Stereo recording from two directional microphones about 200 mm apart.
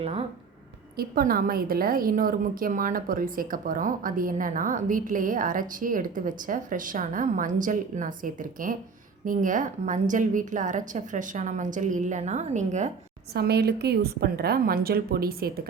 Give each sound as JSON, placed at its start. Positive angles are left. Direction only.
{"t": 0.0, "sound": "speech", "side_deg": -30}
{"t": 0.9, "sound": "a woman's voice", "side_deg": -50}
{"t": 13.3, "sound": "a woman's voice", "side_deg": -55}